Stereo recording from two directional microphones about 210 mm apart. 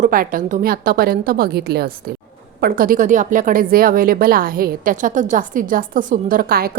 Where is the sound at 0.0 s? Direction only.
40° right (ahead or behind).